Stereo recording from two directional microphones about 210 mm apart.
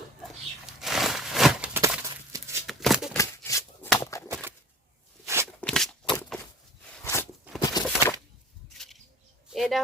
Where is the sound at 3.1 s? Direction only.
15° left (ahead or behind).